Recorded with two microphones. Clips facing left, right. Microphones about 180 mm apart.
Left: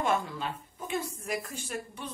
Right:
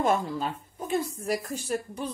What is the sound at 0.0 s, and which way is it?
Speech, 40° right (ahead or behind).